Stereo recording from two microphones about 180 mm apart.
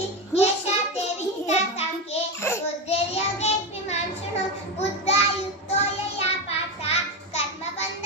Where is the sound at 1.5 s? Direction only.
35° left (ahead or behind).